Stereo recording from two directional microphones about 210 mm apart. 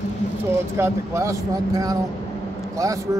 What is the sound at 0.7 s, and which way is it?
Speech, 15° right (ahead or behind).